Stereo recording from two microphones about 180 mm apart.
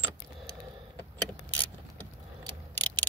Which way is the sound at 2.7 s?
10° left (ahead or behind).